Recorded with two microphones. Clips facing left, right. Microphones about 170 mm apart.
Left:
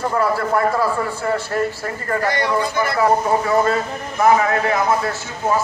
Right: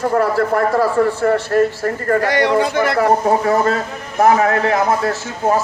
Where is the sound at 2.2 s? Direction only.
75° right (ahead or behind).